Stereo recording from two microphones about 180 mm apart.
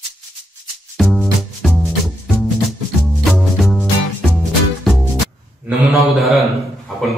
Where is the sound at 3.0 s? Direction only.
Centre (ahead or behind).